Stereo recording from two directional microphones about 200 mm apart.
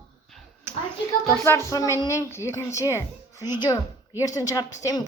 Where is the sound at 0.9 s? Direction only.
10° left (ahead or behind).